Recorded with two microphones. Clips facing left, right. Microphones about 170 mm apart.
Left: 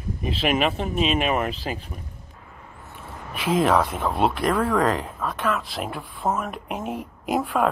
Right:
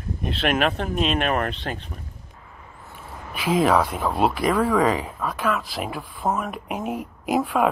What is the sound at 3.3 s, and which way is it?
Speech, centre (ahead or behind).